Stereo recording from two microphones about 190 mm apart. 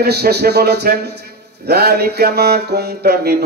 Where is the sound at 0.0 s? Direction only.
60° right (ahead or behind).